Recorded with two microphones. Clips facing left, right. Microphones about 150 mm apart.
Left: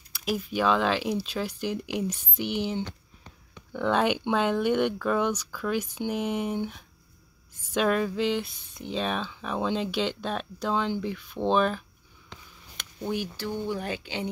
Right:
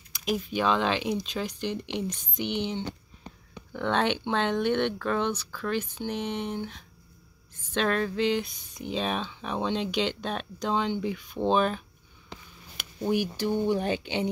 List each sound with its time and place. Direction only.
0.1 s speech: centre (ahead or behind)
12.3 s speech: 10° right (ahead or behind)